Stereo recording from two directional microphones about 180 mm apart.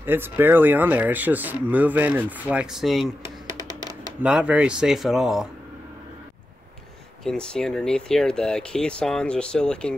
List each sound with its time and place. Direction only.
0.0 s speech: 10° right (ahead or behind)
4.2 s speech: 5° right (ahead or behind)
7.2 s speech: 5° left (ahead or behind)